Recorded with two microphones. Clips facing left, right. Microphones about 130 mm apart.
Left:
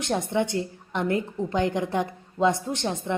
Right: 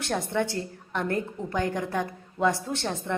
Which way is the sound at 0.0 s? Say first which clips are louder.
Left 2 dB; 20° left (ahead or behind).